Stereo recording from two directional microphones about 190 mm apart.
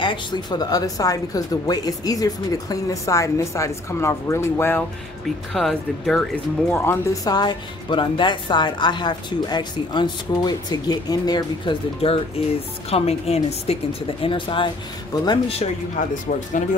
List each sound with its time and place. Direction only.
0.0 s speech: 25° left (ahead or behind)
5.5 s a woman's voice: centre (ahead or behind); by 15.7 s 30° left (ahead or behind)
16.0 s a woman's voice: 40° left (ahead or behind)